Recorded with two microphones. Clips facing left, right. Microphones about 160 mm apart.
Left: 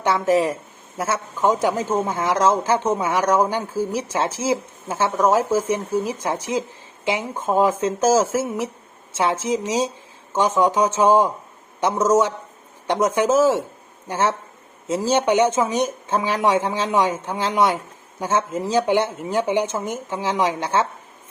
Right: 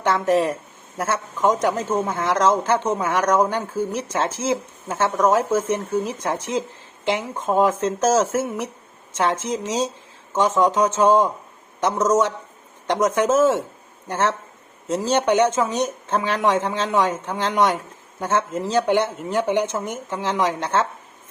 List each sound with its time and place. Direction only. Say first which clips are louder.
0.0 s speech: even; 5° left (ahead or behind)